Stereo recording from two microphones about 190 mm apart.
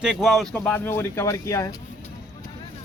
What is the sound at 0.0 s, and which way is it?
A man's voice, centre (ahead or behind).